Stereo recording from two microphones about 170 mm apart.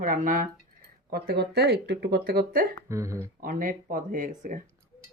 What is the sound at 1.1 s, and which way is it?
Speech, 65° right (ahead or behind).